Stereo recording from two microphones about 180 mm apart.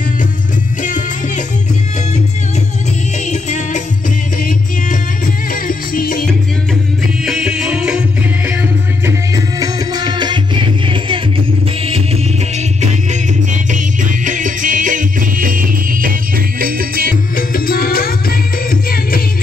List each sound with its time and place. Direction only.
0.8 s music: 45° left (ahead or behind)
3.3 s music: 40° left (ahead or behind)
5.2 s music: 50° left (ahead or behind)
7.2 s music: 5° right (ahead or behind)
9.0 s music: 20° right (ahead or behind)
13.1 s music: 45° right (ahead or behind)
17.4 s music: 55° left (ahead or behind)